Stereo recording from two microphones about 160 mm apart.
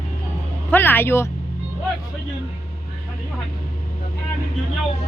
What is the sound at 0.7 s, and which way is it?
Speech, 15° left (ahead or behind).